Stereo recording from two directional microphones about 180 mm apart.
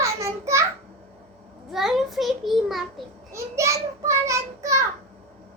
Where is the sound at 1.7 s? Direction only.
Centre (ahead or behind).